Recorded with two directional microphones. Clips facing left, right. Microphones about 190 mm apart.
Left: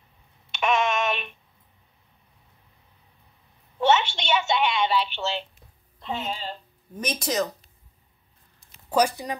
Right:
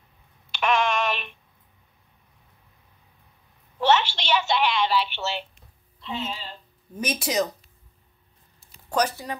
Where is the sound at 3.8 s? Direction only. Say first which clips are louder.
Even; centre (ahead or behind).